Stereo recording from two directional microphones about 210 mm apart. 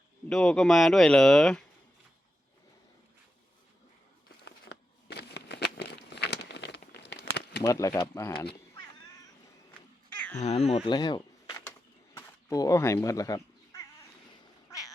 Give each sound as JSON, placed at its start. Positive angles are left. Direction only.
{"t": 0.3, "sound": "speech", "side_deg": 5}
{"t": 4.4, "sound": "a sound", "side_deg": 50}
{"t": 7.6, "sound": "speech", "side_deg": 15}
{"t": 10.3, "sound": "speech", "side_deg": 30}
{"t": 12.1, "sound": "cat", "side_deg": 15}
{"t": 14.7, "sound": "quack", "side_deg": 15}